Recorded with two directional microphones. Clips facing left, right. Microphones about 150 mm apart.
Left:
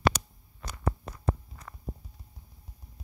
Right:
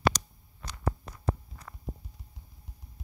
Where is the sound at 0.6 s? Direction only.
50° left (ahead or behind).